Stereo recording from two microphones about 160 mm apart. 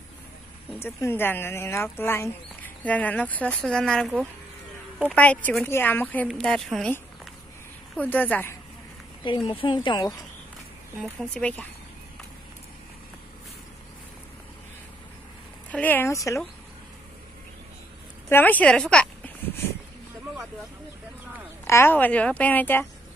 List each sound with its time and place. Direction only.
0.7 s speech: 15° left (ahead or behind)
9.2 s a woman's voice: 30° left (ahead or behind)
11.0 s speech: 5° left (ahead or behind)
15.7 s speech: 10° left (ahead or behind)
18.3 s speech: 10° left (ahead or behind)
21.6 s speech: 15° left (ahead or behind)